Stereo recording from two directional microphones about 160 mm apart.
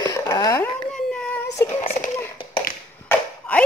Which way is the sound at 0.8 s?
5° left (ahead or behind).